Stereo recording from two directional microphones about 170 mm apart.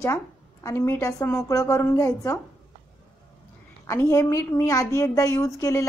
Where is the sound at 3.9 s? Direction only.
15° left (ahead or behind).